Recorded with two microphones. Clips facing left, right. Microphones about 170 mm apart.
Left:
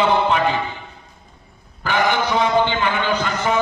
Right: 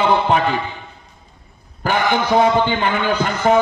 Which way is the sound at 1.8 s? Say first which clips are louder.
Right 1 dB; 45° right (ahead or behind).